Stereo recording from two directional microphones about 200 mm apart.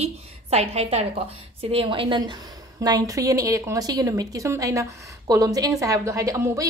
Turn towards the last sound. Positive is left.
turn(degrees=-15)  # may be behind; listen again after turning